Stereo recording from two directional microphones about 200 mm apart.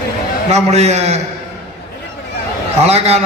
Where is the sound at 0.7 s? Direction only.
35° right (ahead or behind).